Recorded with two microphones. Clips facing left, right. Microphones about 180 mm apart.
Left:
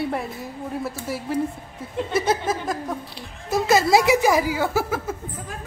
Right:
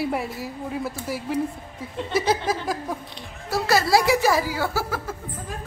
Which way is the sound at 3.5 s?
20° left (ahead or behind).